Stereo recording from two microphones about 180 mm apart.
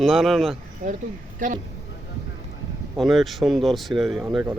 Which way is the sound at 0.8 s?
50° right (ahead or behind).